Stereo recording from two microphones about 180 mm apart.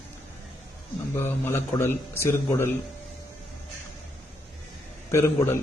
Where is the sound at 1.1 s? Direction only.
15° left (ahead or behind).